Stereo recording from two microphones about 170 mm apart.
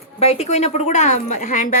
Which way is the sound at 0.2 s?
40° left (ahead or behind).